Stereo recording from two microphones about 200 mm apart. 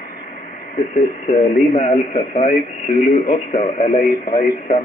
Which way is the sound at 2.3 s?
40° left (ahead or behind).